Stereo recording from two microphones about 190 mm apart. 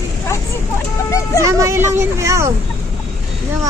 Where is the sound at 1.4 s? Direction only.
15° right (ahead or behind).